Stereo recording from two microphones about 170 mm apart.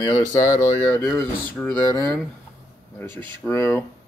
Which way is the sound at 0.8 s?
5° left (ahead or behind).